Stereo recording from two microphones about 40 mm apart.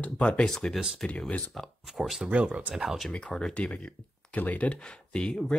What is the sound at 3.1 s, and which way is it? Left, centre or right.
Speech, left.